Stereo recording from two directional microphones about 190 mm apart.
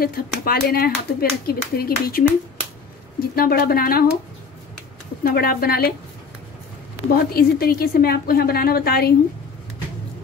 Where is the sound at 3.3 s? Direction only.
50° left (ahead or behind).